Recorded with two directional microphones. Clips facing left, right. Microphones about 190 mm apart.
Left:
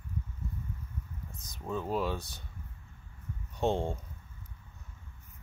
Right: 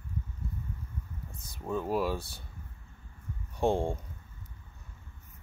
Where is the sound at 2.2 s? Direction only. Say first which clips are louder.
Right 2 dB; 15° left (ahead or behind).